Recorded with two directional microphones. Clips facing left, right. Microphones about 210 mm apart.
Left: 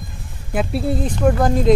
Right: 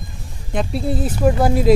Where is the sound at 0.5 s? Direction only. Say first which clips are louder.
Left 1 dB; centre (ahead or behind).